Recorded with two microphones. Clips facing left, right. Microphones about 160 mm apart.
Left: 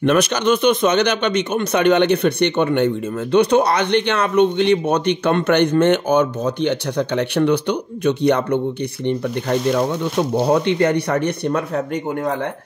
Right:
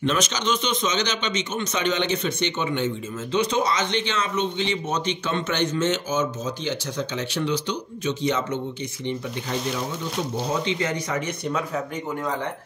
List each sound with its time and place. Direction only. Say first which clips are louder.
0.0 s a man's voice: left 8 dB; 60° left (ahead or behind)